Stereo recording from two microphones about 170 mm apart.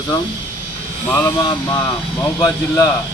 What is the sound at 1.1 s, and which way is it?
Speech, 15° left (ahead or behind).